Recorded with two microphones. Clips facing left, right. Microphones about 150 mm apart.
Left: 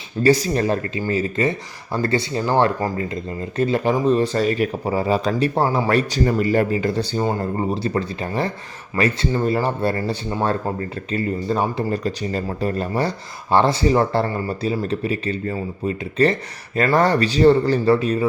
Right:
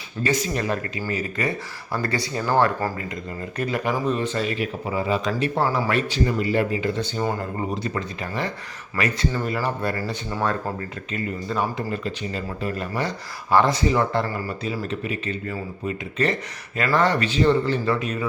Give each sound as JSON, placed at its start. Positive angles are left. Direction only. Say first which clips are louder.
{"t": 0.2, "sound": "speech", "louder": "left 7 dB", "side_deg": 35}
{"t": 5.9, "sound": "speech", "louder": "left 4 dB", "side_deg": 40}